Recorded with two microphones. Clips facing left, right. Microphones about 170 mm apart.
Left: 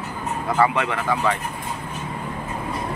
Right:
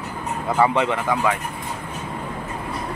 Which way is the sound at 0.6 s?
20° right (ahead or behind).